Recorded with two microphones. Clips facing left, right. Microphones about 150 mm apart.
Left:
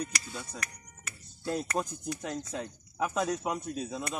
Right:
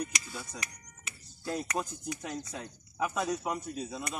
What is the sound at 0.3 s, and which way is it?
Speech, centre (ahead or behind).